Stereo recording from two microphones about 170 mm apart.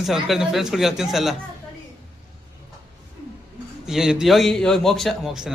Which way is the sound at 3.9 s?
5° right (ahead or behind).